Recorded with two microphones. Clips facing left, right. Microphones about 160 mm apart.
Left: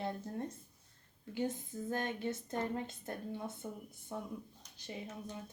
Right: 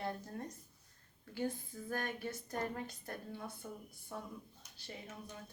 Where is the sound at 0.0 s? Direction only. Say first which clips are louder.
Left 3 dB; 25° left (ahead or behind).